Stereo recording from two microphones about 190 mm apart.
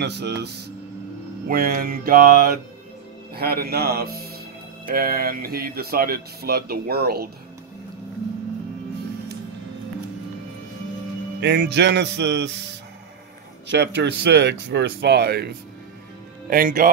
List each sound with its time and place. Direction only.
0.0 s speech: 60° right (ahead or behind)
1.5 s speech: 50° right (ahead or behind)
11.4 s music: 65° right (ahead or behind)
13.7 s speech: 65° right (ahead or behind)
16.4 s speech: 45° right (ahead or behind)